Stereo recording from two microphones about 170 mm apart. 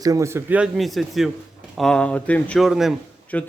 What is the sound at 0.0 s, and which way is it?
Speech, 20° right (ahead or behind).